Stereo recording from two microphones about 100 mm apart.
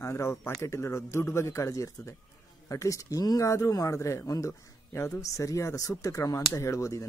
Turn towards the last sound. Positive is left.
turn(degrees=30)  # may be behind; listen again after turning